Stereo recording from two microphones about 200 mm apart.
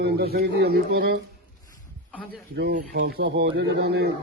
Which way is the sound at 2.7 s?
50° right (ahead or behind).